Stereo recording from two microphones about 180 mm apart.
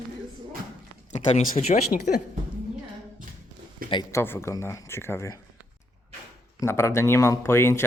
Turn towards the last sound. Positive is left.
turn(degrees=15)  # may be behind; listen again after turning